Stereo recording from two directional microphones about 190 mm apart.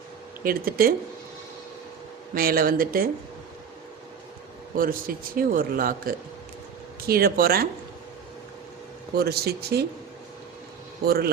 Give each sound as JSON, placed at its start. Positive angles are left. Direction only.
{"t": 0.4, "sound": "speech", "side_deg": -50}
{"t": 2.3, "sound": "speech", "side_deg": -50}
{"t": 4.7, "sound": "speech", "side_deg": -50}
{"t": 9.1, "sound": "speech", "side_deg": -55}
{"t": 11.0, "sound": "speech", "side_deg": -55}